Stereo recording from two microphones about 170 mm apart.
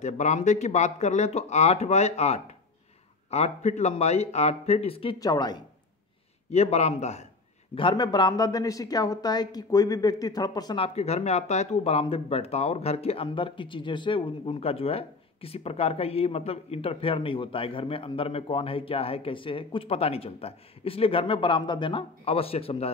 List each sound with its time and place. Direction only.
0.0 s a woman's voice: 45° left (ahead or behind)
5.2 s speech: 20° left (ahead or behind)
6.5 s a woman's voice: 40° left (ahead or behind)
7.7 s a woman's voice: 25° left (ahead or behind)